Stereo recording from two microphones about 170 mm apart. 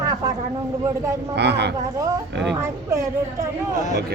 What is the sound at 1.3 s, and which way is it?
Speech, 85° right.